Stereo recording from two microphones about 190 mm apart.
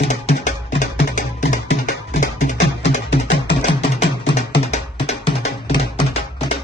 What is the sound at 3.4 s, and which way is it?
Music, 30° left (ahead or behind).